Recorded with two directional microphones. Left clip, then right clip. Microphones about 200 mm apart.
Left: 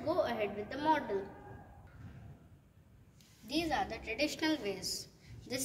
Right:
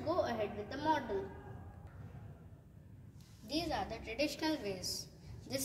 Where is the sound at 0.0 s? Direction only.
15° left (ahead or behind).